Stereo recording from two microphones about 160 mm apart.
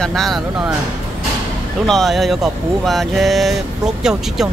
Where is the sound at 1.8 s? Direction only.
Centre (ahead or behind).